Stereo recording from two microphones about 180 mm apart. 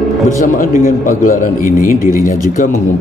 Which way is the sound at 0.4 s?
45° left (ahead or behind).